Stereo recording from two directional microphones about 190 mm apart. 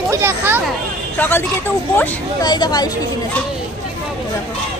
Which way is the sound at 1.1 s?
10° left (ahead or behind).